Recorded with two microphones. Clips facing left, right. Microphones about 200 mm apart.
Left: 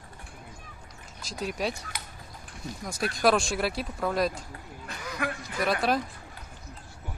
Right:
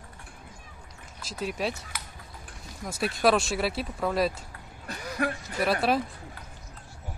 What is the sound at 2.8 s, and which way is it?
Speech, 5° right (ahead or behind).